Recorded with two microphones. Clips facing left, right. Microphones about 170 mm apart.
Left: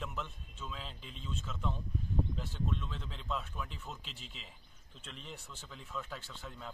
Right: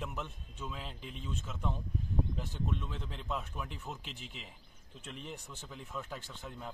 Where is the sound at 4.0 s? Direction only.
55° right (ahead or behind).